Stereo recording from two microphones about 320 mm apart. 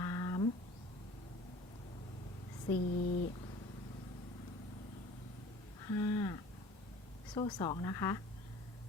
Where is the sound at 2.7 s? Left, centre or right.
Left.